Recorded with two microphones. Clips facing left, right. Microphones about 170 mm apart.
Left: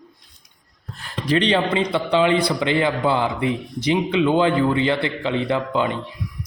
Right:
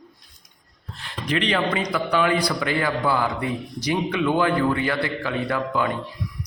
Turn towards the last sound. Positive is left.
turn(degrees=20)  # may be behind; listen again after turning